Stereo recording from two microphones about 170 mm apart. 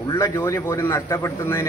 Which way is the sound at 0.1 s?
20° left (ahead or behind).